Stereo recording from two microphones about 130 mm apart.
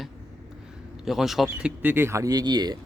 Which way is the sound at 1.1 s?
Centre (ahead or behind).